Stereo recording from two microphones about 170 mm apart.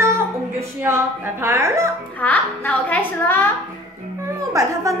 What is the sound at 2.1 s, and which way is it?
A woman's voice, 10° left (ahead or behind).